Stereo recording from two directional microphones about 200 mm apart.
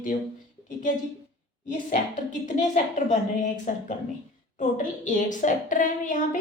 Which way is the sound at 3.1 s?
40° left (ahead or behind).